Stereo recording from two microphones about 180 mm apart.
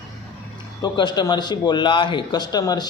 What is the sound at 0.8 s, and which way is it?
A man's voice, 25° left (ahead or behind).